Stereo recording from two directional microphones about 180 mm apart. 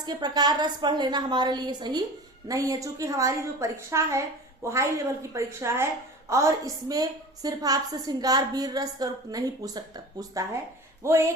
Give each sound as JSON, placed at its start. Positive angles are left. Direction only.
{"t": 0.0, "sound": "a woman's voice", "side_deg": -20}